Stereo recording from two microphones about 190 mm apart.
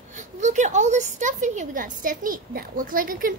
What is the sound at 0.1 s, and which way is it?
A woman's voice, 40° right (ahead or behind).